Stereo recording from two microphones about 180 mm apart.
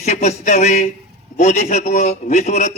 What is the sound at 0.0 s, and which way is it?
Speech, 40° left (ahead or behind).